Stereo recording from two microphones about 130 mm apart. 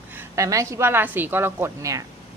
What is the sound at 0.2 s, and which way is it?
Speech, 25° right (ahead or behind).